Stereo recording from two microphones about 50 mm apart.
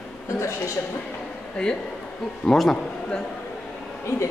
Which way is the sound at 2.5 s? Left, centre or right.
Centre.